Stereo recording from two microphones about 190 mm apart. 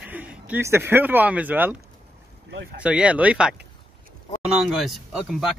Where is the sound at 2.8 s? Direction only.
5° right (ahead or behind).